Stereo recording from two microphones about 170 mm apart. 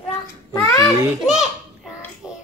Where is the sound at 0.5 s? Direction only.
20° left (ahead or behind).